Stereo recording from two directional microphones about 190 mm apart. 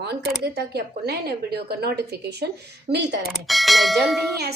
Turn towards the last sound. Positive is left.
turn(degrees=0)  # may be behind; listen again after turning